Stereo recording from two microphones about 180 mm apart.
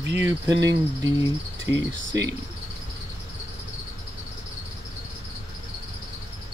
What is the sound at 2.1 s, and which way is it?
Speech, 20° right (ahead or behind).